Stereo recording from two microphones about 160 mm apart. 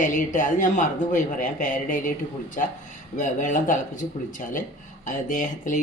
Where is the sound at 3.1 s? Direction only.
55° left (ahead or behind).